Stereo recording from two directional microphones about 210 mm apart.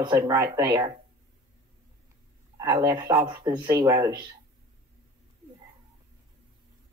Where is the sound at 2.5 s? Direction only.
15° right (ahead or behind).